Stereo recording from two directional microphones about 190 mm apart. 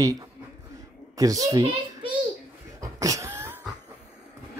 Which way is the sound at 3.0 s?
15° right (ahead or behind).